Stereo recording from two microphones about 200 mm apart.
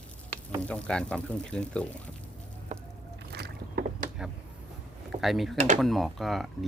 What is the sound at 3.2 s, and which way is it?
Rowboat, 55° right (ahead or behind).